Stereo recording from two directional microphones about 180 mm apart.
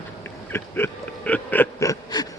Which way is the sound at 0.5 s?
10° left (ahead or behind).